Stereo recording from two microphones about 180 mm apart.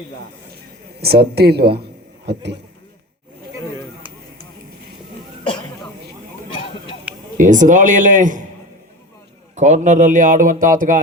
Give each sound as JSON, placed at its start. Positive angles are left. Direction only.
{"t": 1.0, "sound": "a man's voice", "side_deg": -60}
{"t": 7.3, "sound": "speech", "side_deg": -45}
{"t": 9.6, "sound": "speech", "side_deg": -40}